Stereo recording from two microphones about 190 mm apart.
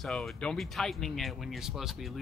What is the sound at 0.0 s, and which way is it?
Speech, 5° left (ahead or behind).